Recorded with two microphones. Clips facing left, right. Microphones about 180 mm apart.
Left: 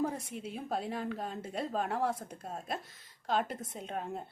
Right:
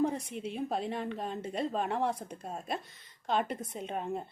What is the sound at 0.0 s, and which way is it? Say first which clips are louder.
A woman's voice: right 4 dB; 5° left (ahead or behind).